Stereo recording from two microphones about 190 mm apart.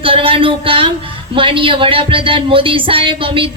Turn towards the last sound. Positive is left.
turn(degrees=-25)  # may be behind; listen again after turning